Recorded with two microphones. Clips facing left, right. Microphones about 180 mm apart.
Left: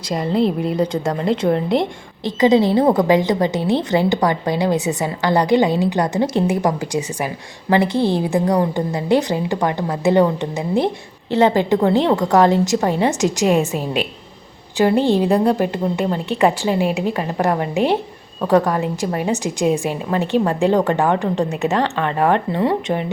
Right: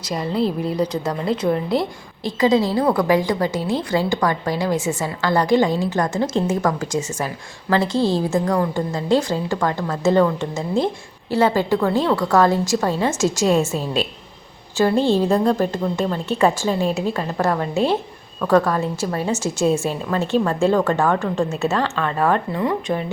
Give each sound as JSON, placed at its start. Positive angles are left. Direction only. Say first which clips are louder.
{"t": 0.1, "sound": "a woman's voice", "louder": "left 3 dB", "side_deg": 25}